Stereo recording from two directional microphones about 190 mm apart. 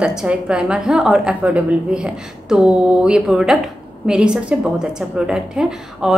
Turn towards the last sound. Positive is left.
turn(degrees=-5)  # may be behind; listen again after turning